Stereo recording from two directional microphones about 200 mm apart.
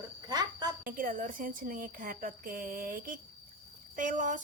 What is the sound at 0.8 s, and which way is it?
A woman's voice, 45° right (ahead or behind).